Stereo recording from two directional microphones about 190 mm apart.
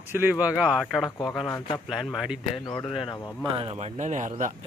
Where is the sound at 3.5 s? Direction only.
30° right (ahead or behind).